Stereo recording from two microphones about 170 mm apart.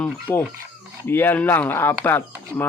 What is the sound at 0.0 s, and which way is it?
Speech, 10° left (ahead or behind).